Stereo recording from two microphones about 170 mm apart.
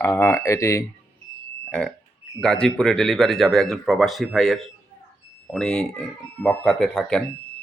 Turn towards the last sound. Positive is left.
turn(degrees=5)  # may be behind; listen again after turning